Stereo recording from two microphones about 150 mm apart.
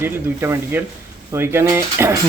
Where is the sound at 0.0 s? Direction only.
15° right (ahead or behind).